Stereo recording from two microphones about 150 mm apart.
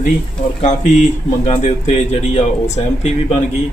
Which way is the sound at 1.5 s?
50° left (ahead or behind).